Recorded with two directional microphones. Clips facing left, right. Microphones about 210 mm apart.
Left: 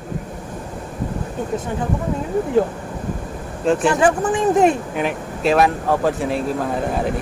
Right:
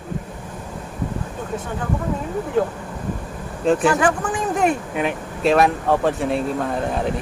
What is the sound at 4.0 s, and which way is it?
Speech, 25° left (ahead or behind).